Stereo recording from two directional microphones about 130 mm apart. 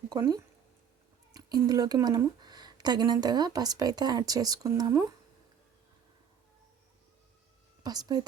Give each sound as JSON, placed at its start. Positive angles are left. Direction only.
{"t": 0.1, "sound": "speech", "side_deg": -25}
{"t": 7.9, "sound": "speech", "side_deg": -30}